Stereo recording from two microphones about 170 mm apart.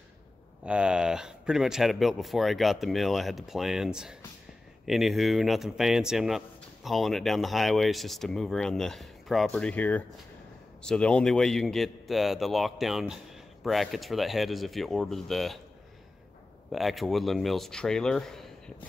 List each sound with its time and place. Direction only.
0.7 s a man's voice: 5° right (ahead or behind)
16.7 s a man's voice: centre (ahead or behind)